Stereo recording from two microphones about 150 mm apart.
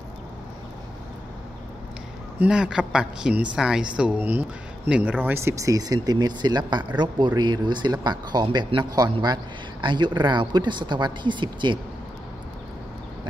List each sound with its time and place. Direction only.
2.3 s a woman's voice: 5° right (ahead or behind); by 11.8 s 30° right (ahead or behind)